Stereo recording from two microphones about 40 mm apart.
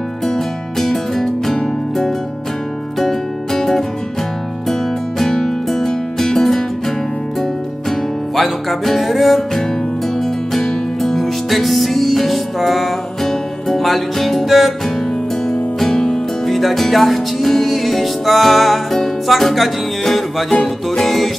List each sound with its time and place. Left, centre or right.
0.2 s music: centre
5.3 s music: centre
8.4 s music: centre
10.1 s music: centre
15.4 s music: centre
16.4 s music: centre
20.5 s music: centre
21.0 s music: centre